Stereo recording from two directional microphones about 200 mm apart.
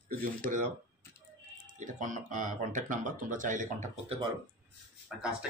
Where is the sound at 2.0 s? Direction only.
40° right (ahead or behind).